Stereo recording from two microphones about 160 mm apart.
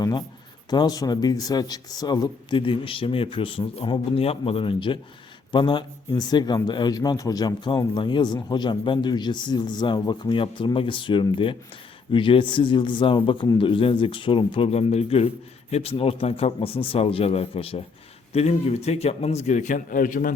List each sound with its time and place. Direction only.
0.0 s a man's voice: 25° left (ahead or behind); by 20.3 s 60° left (ahead or behind)